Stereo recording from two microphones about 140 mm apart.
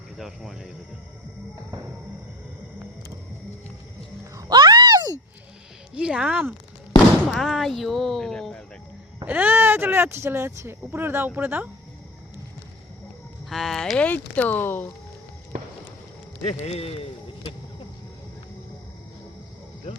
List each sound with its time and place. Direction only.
0.2 s speech: centre (ahead or behind)
4.4 s a sound: 30° right (ahead or behind)
5.9 s a woman's voice: 5° right (ahead or behind)
7.3 s speech: centre (ahead or behind)
9.2 s a woman's voice: 10° right (ahead or behind)
13.5 s speech: centre (ahead or behind)
16.5 s speech: 45° left (ahead or behind)